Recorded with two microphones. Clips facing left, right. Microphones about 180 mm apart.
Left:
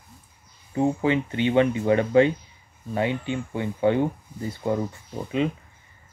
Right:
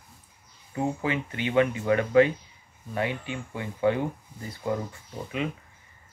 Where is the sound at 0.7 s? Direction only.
30° left (ahead or behind).